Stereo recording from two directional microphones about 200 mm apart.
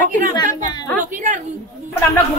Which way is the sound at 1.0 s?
40° right (ahead or behind).